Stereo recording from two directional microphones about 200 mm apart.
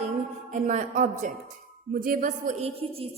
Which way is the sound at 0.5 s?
40° right (ahead or behind).